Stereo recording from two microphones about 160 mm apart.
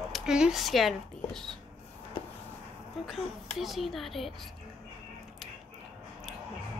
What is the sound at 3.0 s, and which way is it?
Speech, centre (ahead or behind).